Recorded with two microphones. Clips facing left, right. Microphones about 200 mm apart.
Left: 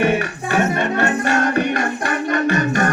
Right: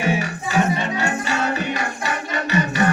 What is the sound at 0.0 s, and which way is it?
Music, 60° left (ahead or behind).